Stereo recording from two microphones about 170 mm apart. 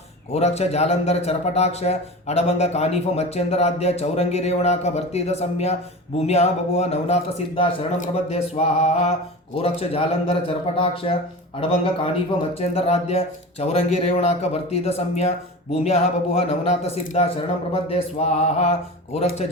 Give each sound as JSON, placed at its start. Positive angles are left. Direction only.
{"t": 0.3, "sound": "a man's voice", "side_deg": 40}
{"t": 12.5, "sound": "a man's voice", "side_deg": 35}